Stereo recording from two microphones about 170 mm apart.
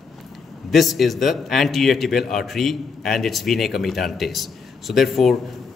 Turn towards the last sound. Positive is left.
turn(degrees=0)  # may be behind; listen again after turning